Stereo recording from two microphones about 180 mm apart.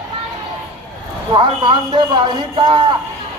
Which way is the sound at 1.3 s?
25° right (ahead or behind).